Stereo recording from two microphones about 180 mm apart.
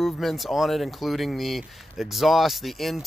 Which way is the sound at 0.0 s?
Centre (ahead or behind).